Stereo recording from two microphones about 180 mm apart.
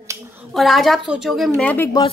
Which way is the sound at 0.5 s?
Centre (ahead or behind).